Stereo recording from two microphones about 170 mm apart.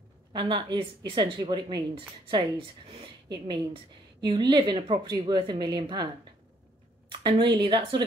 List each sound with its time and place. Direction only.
0.3 s a woman's voice: 30° right (ahead or behind)
7.1 s a sound: 30° right (ahead or behind)
7.5 s a woman's voice: 30° right (ahead or behind)